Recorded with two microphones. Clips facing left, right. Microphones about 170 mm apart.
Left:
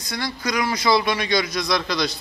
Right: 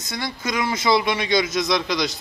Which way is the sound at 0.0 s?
25° right (ahead or behind).